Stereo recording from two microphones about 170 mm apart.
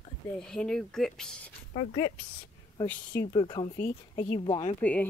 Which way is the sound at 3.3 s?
25° left (ahead or behind).